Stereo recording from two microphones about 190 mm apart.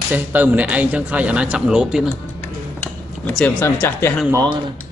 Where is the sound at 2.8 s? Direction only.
10° left (ahead or behind).